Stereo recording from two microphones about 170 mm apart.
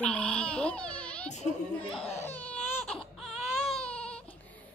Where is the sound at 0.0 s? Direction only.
5° left (ahead or behind).